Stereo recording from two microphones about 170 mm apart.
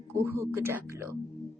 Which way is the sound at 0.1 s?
15° right (ahead or behind).